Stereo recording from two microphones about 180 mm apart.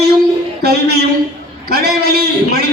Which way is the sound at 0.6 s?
60° right (ahead or behind).